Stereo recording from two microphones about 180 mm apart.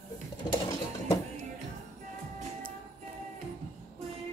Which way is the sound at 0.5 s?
20° left (ahead or behind).